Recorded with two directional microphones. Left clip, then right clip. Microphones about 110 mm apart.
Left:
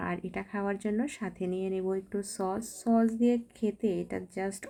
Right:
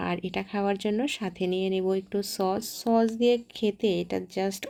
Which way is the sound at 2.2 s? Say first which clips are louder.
Right 6 dB; 10° right (ahead or behind).